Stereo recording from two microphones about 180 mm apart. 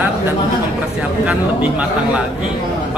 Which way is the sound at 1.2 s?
10° right (ahead or behind).